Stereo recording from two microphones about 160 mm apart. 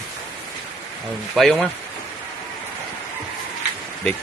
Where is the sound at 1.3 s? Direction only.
Centre (ahead or behind).